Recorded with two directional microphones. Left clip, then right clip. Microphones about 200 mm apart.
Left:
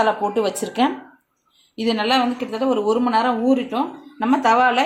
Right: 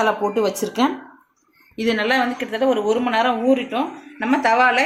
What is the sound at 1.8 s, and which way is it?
A woman's voice, 20° left (ahead or behind).